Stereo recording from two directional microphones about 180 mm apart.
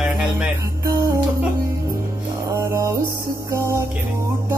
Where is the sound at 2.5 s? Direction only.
15° right (ahead or behind).